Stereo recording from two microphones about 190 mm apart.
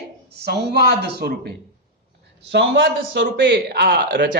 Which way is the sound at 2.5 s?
70° right (ahead or behind).